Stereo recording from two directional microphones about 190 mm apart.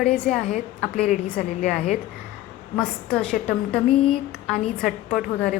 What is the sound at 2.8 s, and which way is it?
A woman's voice, 5° left (ahead or behind).